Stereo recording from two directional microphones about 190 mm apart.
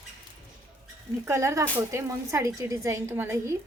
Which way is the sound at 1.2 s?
15° right (ahead or behind).